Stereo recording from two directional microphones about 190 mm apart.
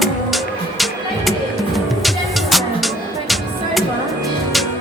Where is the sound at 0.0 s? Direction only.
Centre (ahead or behind).